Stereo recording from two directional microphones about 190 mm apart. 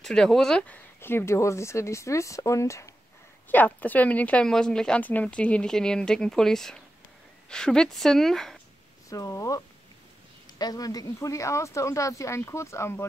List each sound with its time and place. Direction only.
0.0 s speech: centre (ahead or behind)
9.1 s speech: 15° left (ahead or behind)
10.6 s speech: 20° left (ahead or behind)